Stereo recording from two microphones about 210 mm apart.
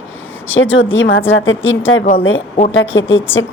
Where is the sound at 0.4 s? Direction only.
65° left (ahead or behind).